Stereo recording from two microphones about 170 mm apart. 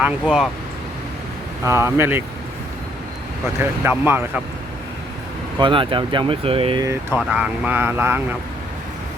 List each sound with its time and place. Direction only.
0.0 s speech: 5° right (ahead or behind)
1.6 s speech: 15° right (ahead or behind)
3.6 s speech: 15° right (ahead or behind)
5.5 s speech: 30° right (ahead or behind)
7.2 s speech: 5° right (ahead or behind)